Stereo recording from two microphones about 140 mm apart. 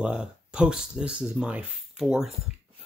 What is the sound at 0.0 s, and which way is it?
Speech, 5° right (ahead or behind).